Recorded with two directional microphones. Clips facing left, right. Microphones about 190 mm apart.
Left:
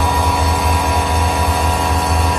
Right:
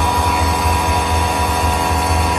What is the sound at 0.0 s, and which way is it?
Vehicle, centre (ahead or behind).